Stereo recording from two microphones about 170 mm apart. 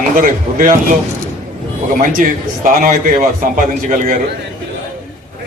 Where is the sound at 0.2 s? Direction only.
50° right (ahead or behind).